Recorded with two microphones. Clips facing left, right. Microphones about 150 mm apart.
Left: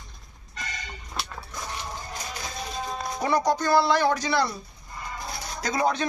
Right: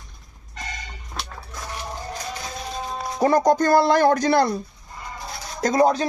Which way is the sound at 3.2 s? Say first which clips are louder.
Right 7 dB; 45° right (ahead or behind).